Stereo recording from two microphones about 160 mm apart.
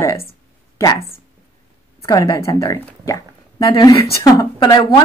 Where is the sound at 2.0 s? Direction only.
20° left (ahead or behind).